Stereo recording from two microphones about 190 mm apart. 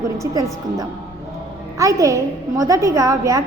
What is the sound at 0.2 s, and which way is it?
A woman's voice, 15° right (ahead or behind).